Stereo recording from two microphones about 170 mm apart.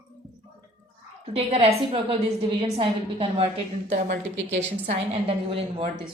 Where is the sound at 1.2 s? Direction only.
35° right (ahead or behind).